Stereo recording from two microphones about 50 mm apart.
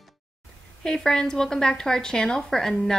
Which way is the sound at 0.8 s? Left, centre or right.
Centre.